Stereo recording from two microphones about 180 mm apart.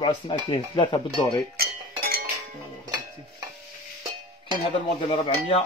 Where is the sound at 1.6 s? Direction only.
60° right (ahead or behind).